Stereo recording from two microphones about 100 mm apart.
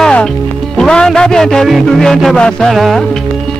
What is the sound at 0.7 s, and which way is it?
A man's voice, 5° left (ahead or behind).